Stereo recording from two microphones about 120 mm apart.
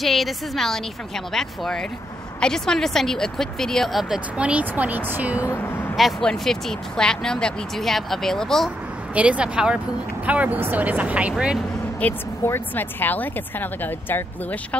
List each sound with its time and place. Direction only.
0.0 s speech: centre (ahead or behind)
5.4 s speech: 20° left (ahead or behind)
5.9 s speech: centre (ahead or behind)
9.1 s speech: 10° right (ahead or behind)
12.0 s speech: 15° left (ahead or behind)